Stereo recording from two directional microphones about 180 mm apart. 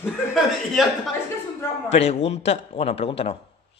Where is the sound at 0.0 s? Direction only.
Centre (ahead or behind).